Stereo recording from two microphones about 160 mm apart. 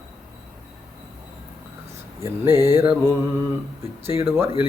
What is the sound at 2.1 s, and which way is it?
Speech, 15° right (ahead or behind).